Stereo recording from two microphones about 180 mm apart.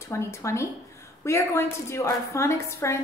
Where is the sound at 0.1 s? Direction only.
15° left (ahead or behind).